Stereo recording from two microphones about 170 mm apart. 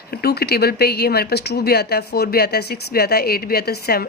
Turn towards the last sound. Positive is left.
turn(degrees=65)  # may be behind; listen again after turning